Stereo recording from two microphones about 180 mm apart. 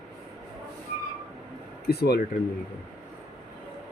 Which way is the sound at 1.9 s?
60° left (ahead or behind).